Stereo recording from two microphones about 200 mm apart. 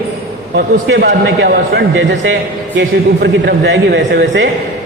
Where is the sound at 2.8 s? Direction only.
55° right (ahead or behind).